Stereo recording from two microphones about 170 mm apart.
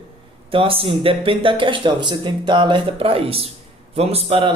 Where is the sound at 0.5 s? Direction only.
30° right (ahead or behind).